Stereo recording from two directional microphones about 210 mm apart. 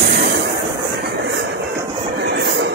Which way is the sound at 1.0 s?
50° right (ahead or behind).